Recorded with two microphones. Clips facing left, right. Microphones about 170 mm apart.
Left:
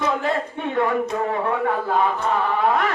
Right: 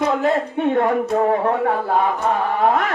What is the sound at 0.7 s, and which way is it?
Speech, 45° right (ahead or behind).